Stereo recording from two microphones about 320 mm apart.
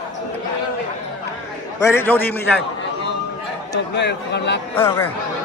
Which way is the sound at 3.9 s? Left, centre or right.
Left.